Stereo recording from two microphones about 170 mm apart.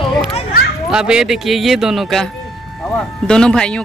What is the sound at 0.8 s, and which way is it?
Speech, 5° right (ahead or behind).